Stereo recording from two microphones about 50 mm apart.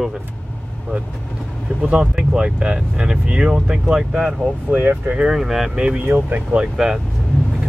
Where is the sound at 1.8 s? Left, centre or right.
Centre.